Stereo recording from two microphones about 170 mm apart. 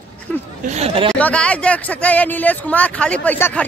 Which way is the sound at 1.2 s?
5° left (ahead or behind).